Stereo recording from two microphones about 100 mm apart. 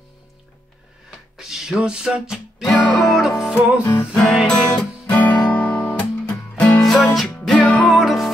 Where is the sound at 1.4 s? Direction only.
5° right (ahead or behind).